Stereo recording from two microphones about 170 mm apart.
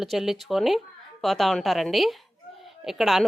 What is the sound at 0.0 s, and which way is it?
A woman's voice, centre (ahead or behind).